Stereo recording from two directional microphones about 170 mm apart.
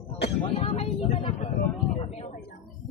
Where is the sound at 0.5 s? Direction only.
35° left (ahead or behind).